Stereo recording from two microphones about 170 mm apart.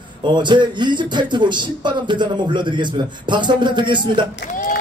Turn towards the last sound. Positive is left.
turn(degrees=45)  # may be behind; listen again after turning